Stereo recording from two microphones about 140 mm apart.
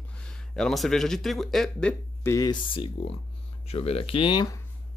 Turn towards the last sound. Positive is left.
turn(degrees=35)  # may be behind; listen again after turning